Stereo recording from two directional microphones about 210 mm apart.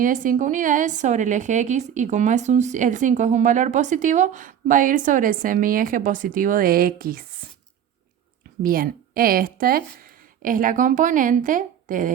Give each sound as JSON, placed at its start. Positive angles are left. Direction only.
{"t": 0.0, "sound": "a woman's voice", "side_deg": -40}
{"t": 8.6, "sound": "a woman's voice", "side_deg": -45}